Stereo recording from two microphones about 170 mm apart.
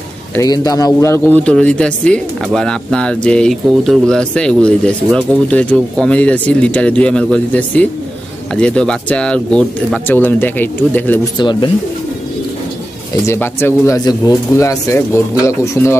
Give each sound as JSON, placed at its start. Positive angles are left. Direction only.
{"t": 0.4, "sound": "speech", "side_deg": 20}
{"t": 11.3, "sound": "speech", "side_deg": 25}
{"t": 13.3, "sound": "speech", "side_deg": 15}